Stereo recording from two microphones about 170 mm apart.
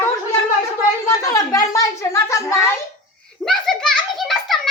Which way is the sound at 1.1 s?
20° left (ahead or behind).